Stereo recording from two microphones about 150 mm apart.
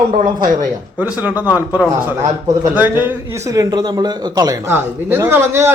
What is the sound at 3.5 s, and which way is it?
Speech, 25° right (ahead or behind).